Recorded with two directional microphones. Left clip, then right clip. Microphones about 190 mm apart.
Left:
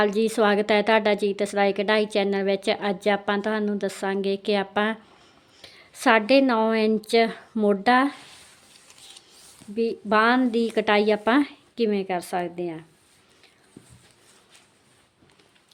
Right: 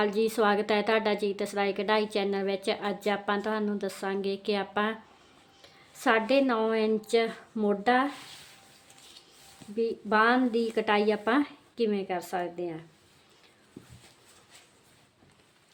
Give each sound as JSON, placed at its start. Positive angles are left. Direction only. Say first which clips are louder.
{"t": 0.0, "sound": "a woman's voice", "louder": "left 5 dB", "side_deg": 40}
{"t": 9.7, "sound": "speech", "louder": "left 4 dB", "side_deg": 45}